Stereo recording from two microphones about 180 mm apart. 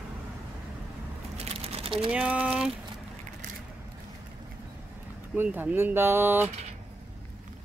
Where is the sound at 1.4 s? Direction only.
30° right (ahead or behind).